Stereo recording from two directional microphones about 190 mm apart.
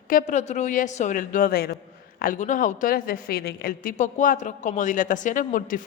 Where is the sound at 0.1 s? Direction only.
40° left (ahead or behind).